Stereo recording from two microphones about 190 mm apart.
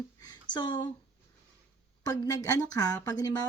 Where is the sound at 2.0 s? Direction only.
20° left (ahead or behind).